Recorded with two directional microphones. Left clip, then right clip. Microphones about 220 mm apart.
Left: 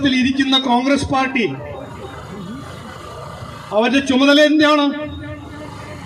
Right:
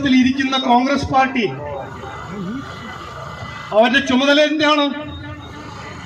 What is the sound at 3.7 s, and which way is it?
A man's voice, 50° left (ahead or behind).